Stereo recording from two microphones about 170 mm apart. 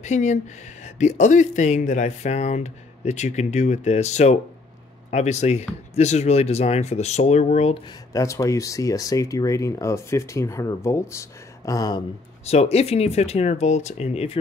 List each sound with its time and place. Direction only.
0.0 s speech: 45° left (ahead or behind)
8.1 s speech: 20° left (ahead or behind)
12.4 s speech: 35° left (ahead or behind)